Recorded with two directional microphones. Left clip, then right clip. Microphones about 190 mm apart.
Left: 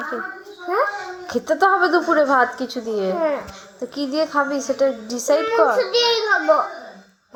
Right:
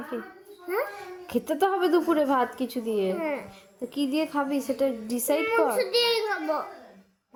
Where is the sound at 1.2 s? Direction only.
45° right (ahead or behind).